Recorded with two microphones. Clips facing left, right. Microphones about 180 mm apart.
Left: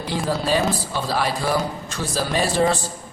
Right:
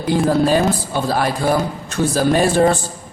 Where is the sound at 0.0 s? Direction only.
50° right (ahead or behind).